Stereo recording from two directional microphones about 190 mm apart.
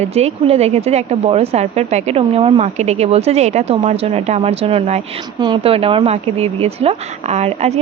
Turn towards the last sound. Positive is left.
turn(degrees=-35)  # may be behind; listen again after turning